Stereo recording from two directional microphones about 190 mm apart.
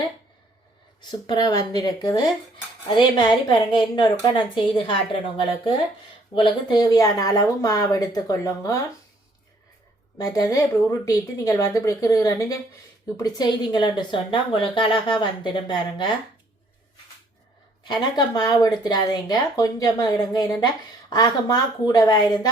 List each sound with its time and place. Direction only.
1.3 s a woman's voice: 20° left (ahead or behind)
6.3 s a woman's voice: 25° left (ahead or behind)
10.2 s a woman's voice: 20° left (ahead or behind)
17.8 s a woman's voice: 20° left (ahead or behind)